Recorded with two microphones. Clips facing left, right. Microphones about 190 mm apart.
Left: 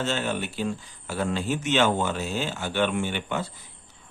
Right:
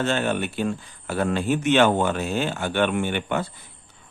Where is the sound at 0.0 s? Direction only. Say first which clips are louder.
Right 4 dB; 55° right (ahead or behind).